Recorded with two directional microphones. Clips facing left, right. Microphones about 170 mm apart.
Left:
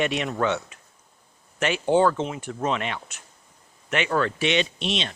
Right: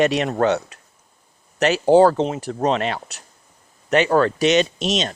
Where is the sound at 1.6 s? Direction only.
40° right (ahead or behind).